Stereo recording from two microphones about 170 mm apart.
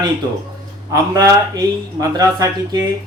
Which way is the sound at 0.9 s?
20° right (ahead or behind).